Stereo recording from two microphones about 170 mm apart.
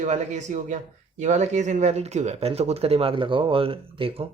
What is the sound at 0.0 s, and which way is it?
A man's voice, 45° right (ahead or behind).